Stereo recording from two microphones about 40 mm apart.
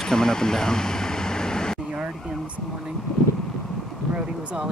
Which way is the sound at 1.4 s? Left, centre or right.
Centre.